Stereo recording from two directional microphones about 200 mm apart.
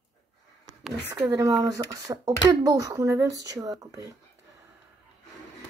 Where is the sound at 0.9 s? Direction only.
15° right (ahead or behind).